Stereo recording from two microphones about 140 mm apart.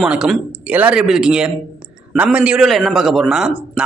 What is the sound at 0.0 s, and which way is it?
Speech, 5° right (ahead or behind).